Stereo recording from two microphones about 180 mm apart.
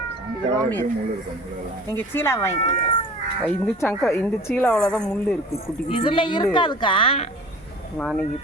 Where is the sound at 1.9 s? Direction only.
15° left (ahead or behind).